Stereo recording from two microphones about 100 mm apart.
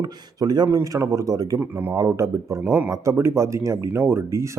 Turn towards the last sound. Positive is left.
turn(degrees=-30)  # may be behind; listen again after turning